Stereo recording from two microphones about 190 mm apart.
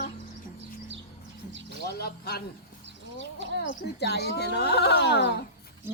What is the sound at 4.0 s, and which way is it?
Speech, 60° left (ahead or behind).